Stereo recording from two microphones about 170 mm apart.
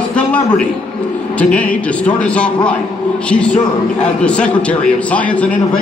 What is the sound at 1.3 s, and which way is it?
A man's voice, 10° left (ahead or behind).